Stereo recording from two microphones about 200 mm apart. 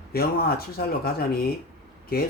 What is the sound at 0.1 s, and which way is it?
Speech, 50° left (ahead or behind).